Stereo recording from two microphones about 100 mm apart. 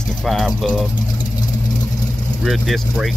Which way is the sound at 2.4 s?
Centre (ahead or behind).